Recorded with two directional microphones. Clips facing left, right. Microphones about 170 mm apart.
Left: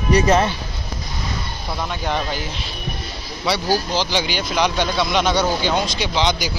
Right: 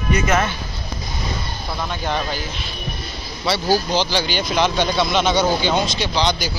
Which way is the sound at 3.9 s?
15° left (ahead or behind).